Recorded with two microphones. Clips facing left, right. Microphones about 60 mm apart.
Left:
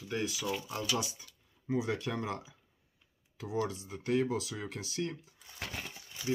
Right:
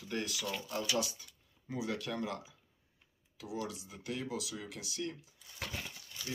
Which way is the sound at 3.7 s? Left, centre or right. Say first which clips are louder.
Left 9 dB; left.